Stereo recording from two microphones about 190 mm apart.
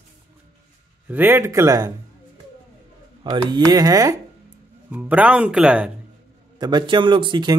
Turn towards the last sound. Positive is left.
turn(degrees=-25)  # may be behind; listen again after turning